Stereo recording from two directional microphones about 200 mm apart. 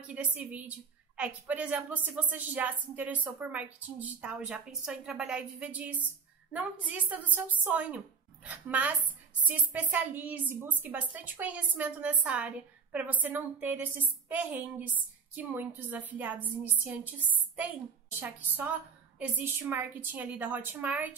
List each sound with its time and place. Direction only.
0.1 s a woman's voice: 5° right (ahead or behind)
18.2 s a woman's voice: 10° right (ahead or behind)